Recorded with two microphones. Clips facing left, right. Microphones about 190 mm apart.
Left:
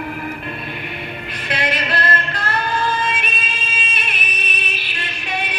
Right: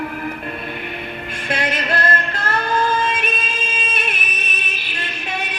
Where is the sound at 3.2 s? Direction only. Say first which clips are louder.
Right 4 dB; 45° right (ahead or behind).